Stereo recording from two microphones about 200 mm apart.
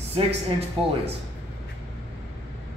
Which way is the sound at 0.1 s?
30° right (ahead or behind).